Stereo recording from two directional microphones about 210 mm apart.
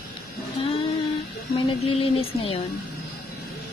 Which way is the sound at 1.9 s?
25° left (ahead or behind).